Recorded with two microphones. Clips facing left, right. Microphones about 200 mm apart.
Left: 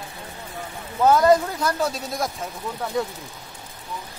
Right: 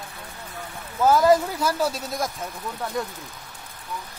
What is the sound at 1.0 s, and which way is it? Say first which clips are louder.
Speech: left 1 dB; 5° right (ahead or behind).